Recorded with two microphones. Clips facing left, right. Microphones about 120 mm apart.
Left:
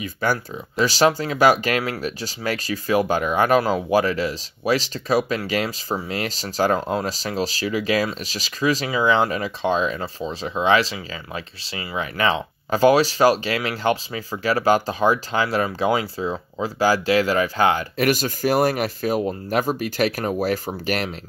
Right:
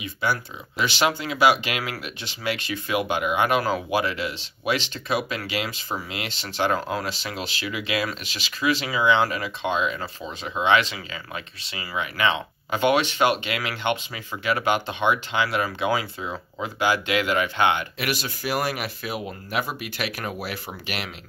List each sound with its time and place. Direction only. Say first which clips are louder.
0.0 s speech: left 3 dB; 45° left (ahead or behind)